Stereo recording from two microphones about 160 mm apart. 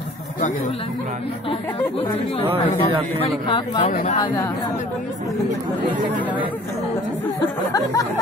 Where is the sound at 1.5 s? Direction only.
35° left (ahead or behind).